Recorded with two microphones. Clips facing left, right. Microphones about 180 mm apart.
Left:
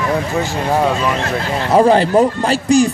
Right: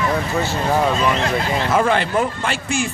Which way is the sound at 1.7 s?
35° left (ahead or behind).